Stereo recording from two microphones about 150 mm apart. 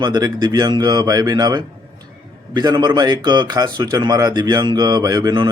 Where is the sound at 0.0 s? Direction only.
25° right (ahead or behind).